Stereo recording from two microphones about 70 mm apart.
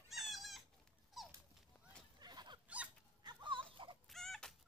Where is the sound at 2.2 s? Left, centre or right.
Right.